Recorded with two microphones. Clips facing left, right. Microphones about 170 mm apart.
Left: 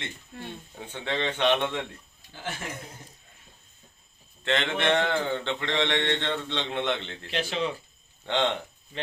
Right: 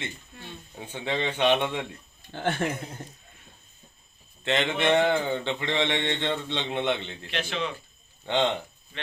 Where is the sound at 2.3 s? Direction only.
60° right (ahead or behind).